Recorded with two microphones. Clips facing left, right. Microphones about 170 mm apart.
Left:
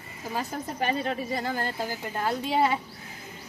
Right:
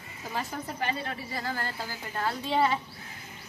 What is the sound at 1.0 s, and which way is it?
Speech, 20° left (ahead or behind).